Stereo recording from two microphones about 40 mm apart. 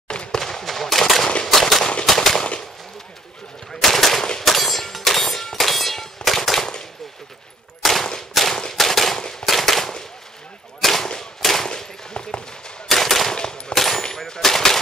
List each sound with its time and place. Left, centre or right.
0.1 s a sound: left
0.4 s gunshot: centre
1.4 s a sound: centre
2.0 s machine gun: centre
3.7 s machine gun: centre
4.4 s clang: centre
6.2 s gunshot: centre
7.8 s gunshot: centre
10.8 s artillery fire: centre
11.4 s gunshot: centre
12.9 s machine gun: centre
13.3 s machine gun: centre
13.7 s a sound: centre
14.0 s gunshot: centre